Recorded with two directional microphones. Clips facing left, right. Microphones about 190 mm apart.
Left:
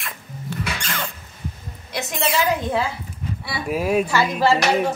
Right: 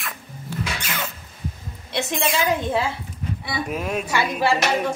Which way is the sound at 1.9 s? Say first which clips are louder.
Right 3 dB; 25° right (ahead or behind).